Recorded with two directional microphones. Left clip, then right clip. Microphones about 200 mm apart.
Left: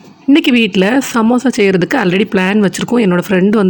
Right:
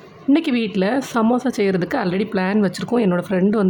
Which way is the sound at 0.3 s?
15° left (ahead or behind).